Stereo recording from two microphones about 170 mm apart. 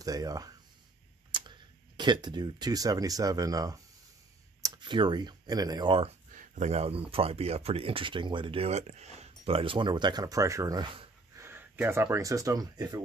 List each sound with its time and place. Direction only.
0.0 s speech: 20° right (ahead or behind)
6.3 s speech: 40° right (ahead or behind); by 11.4 s 25° right (ahead or behind)
11.4 s speech: 10° right (ahead or behind)